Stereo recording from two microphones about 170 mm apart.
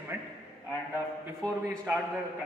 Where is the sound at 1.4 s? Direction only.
5° left (ahead or behind).